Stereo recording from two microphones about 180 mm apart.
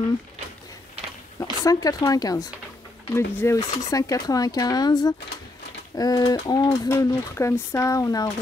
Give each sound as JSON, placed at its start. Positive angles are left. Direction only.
{"t": 1.4, "sound": "speech", "side_deg": 20}